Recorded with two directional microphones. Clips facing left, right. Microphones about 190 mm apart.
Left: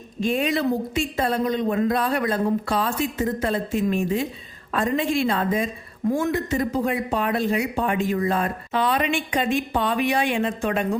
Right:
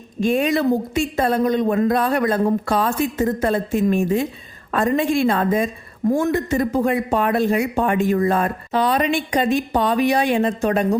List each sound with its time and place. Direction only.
0.2 s speech: 45° right (ahead or behind)